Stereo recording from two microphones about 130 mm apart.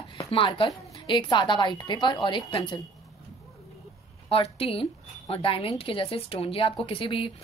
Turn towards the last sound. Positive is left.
turn(degrees=40)  # may be behind; listen again after turning